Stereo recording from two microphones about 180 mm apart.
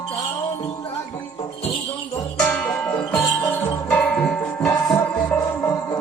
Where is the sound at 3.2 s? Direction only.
10° left (ahead or behind).